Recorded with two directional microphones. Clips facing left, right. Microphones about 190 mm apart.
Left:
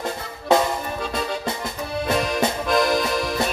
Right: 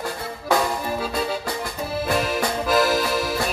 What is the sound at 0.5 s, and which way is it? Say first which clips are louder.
Music: left 3 dB; 25° left (ahead or behind).